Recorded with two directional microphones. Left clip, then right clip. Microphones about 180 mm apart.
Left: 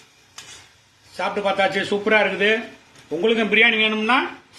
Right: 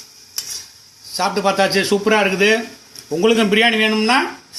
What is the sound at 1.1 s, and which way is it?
A man's voice, 35° right (ahead or behind).